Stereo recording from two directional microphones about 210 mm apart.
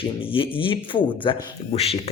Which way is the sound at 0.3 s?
25° left (ahead or behind).